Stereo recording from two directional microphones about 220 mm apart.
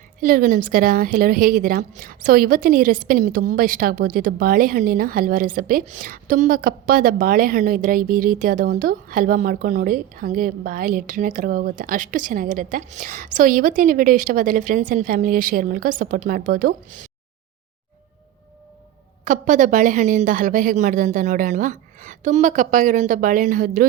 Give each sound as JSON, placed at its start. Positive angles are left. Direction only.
{"t": 0.2, "sound": "a woman's voice", "side_deg": -40}
{"t": 19.2, "sound": "a woman's voice", "side_deg": -35}